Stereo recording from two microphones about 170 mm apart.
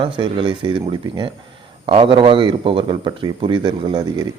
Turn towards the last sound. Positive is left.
turn(degrees=-25)  # may be behind; listen again after turning